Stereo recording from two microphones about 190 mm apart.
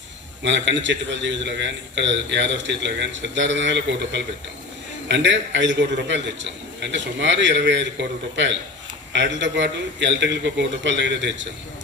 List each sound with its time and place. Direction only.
0.4 s a man's voice: 70° right (ahead or behind)